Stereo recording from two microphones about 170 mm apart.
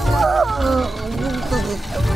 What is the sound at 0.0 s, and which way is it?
Music, centre (ahead or behind).